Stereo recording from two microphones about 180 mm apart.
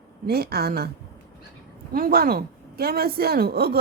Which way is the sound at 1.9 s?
55° right (ahead or behind).